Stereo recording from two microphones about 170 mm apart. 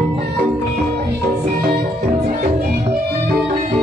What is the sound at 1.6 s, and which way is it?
Music, 70° right (ahead or behind).